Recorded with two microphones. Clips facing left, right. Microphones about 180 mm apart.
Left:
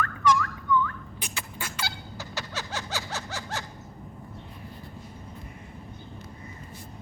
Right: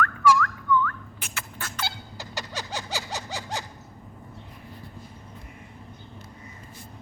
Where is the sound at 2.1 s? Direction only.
15° right (ahead or behind).